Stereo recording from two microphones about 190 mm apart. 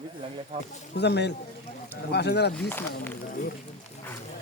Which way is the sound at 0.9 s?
60° left (ahead or behind).